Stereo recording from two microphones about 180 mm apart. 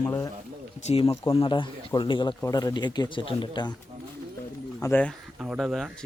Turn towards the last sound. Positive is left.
turn(degrees=0)  # may be behind; listen again after turning